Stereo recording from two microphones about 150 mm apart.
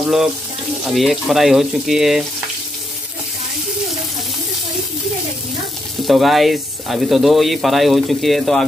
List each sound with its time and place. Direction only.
0.8 s speech: centre (ahead or behind)
6.0 s speech: centre (ahead or behind)